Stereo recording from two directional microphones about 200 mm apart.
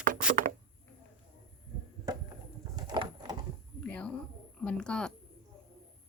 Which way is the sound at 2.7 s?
20° right (ahead or behind).